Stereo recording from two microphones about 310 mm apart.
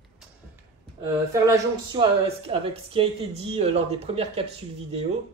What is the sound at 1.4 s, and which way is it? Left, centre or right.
Speech, centre.